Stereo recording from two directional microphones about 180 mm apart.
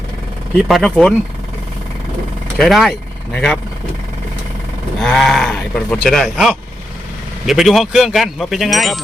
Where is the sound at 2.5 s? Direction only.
Centre (ahead or behind).